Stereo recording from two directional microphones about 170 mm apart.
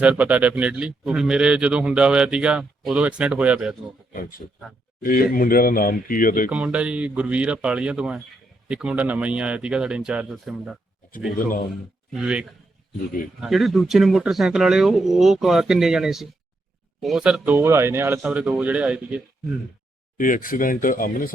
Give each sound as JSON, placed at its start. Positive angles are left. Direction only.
{"t": 0.0, "sound": "speech", "side_deg": -10}
{"t": 4.1, "sound": "speech", "side_deg": 60}
{"t": 6.5, "sound": "speech", "side_deg": -5}
{"t": 11.3, "sound": "speech", "side_deg": 55}
{"t": 12.1, "sound": "speech", "side_deg": -5}
{"t": 20.1, "sound": "speech", "side_deg": 55}